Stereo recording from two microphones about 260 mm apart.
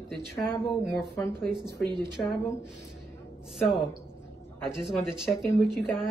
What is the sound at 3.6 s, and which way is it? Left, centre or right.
A woman's voice, centre.